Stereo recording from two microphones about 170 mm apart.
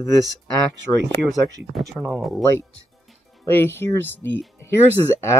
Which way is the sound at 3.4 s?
15° left (ahead or behind).